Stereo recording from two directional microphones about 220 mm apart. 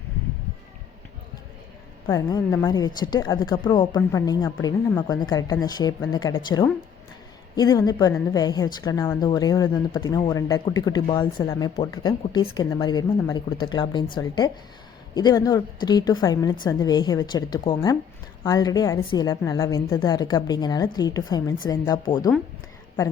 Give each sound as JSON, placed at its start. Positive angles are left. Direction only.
{"t": 2.0, "sound": "a woman's voice", "side_deg": 15}